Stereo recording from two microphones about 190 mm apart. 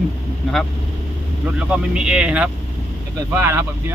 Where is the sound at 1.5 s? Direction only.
5° right (ahead or behind).